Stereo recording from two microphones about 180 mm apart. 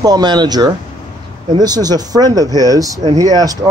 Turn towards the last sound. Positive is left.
turn(degrees=-20)  # may be behind; listen again after turning